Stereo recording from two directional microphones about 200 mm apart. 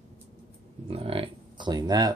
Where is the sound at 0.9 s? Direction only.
30° right (ahead or behind).